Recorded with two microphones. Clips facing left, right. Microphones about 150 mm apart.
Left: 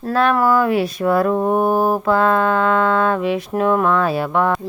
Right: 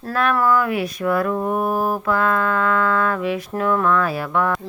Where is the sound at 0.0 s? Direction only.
30° left (ahead or behind).